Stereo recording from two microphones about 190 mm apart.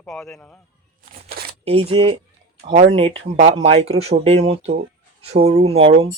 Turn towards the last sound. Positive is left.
turn(degrees=-30)  # may be behind; listen again after turning